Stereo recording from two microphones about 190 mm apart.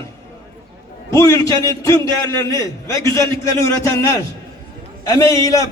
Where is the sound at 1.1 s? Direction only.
15° left (ahead or behind).